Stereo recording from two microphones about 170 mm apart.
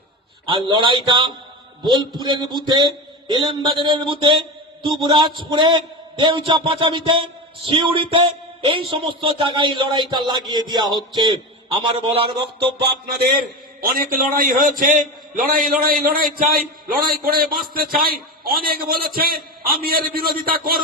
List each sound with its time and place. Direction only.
0.4 s a man's voice: 30° right (ahead or behind)
13.8 s a man's voice: 55° right (ahead or behind)